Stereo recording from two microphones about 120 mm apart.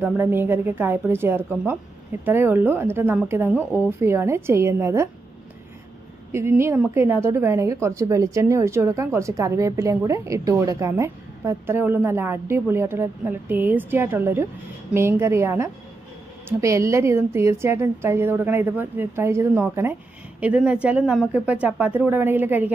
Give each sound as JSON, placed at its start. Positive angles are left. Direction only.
{"t": 0.0, "sound": "a woman's voice", "side_deg": -20}
{"t": 6.3, "sound": "a woman's voice", "side_deg": -20}